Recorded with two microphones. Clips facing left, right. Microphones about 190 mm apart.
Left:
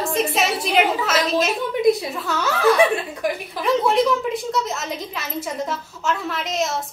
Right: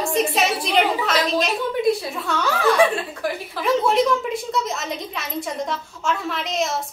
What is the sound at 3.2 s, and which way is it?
Speech, 15° left (ahead or behind).